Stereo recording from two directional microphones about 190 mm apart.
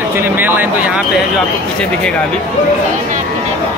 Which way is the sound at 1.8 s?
5° left (ahead or behind).